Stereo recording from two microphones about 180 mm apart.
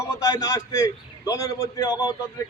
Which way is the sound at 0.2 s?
20° left (ahead or behind).